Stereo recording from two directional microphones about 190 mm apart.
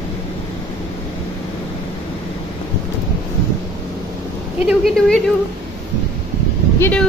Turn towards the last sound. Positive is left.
turn(degrees=5)  # may be behind; listen again after turning